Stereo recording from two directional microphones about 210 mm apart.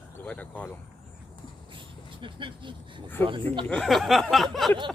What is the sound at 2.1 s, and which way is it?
Speech, 25° right (ahead or behind).